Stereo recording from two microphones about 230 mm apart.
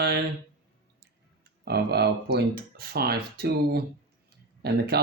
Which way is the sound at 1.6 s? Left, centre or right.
Right.